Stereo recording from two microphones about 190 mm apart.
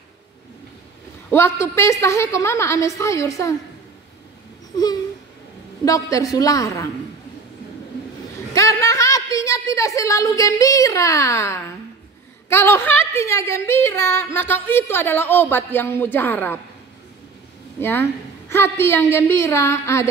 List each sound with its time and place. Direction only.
1.3 s a woman's voice: 15° left (ahead or behind)
4.7 s a sound: 20° left (ahead or behind)
5.9 s a woman's voice: 15° left (ahead or behind)
8.5 s a sound: 15° left (ahead or behind)
12.4 s a woman's voice: 10° left (ahead or behind)
17.7 s a woman's voice: 10° left (ahead or behind)